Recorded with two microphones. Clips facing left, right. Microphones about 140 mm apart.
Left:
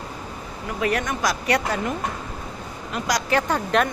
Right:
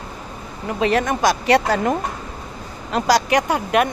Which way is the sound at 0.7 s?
25° right (ahead or behind).